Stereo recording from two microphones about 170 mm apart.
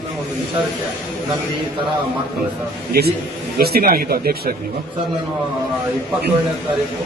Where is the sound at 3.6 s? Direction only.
65° right (ahead or behind).